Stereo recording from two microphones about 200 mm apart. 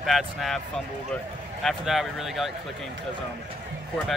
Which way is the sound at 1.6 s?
Centre (ahead or behind).